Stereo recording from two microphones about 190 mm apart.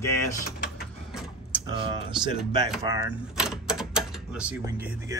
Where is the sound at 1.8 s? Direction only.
25° right (ahead or behind).